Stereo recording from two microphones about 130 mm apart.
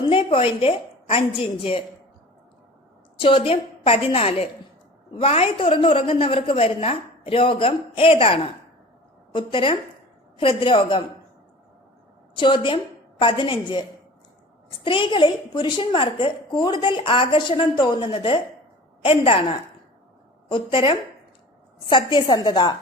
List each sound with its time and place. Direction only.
0.0 s a sound: 40° left (ahead or behind)
1.4 s a woman's voice: 45° left (ahead or behind)
3.2 s a woman's voice: 45° left (ahead or behind)
12.3 s a woman's voice: 40° left (ahead or behind)
14.8 s a woman's voice: 40° left (ahead or behind)